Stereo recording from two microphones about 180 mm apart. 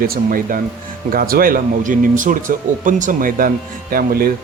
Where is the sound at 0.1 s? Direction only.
50° right (ahead or behind).